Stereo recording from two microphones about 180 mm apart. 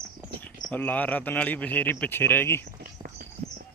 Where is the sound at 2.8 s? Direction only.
55° right (ahead or behind).